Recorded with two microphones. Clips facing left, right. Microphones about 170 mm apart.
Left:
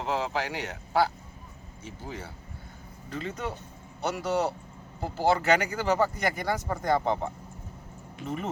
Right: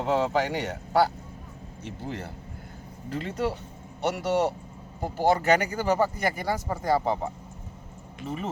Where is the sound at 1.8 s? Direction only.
65° right (ahead or behind).